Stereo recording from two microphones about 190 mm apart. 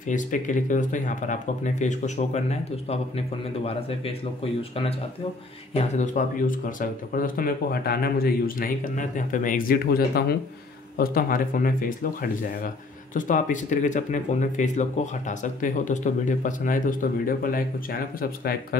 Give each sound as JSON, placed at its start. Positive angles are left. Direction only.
{"t": 0.0, "sound": "speech", "side_deg": 40}
{"t": 5.8, "sound": "speech", "side_deg": 40}